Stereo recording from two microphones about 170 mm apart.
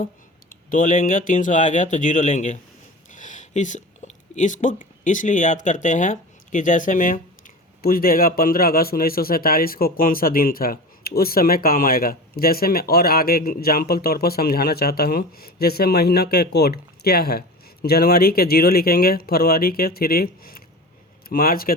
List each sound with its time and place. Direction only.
0.5 s speech: 55° left (ahead or behind)